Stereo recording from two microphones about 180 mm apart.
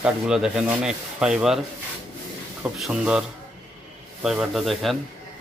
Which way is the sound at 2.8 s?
5° right (ahead or behind).